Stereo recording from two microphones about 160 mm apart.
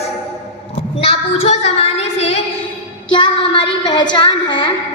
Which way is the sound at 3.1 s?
30° left (ahead or behind).